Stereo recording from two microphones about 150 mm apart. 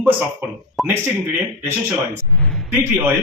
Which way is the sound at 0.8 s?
Centre (ahead or behind).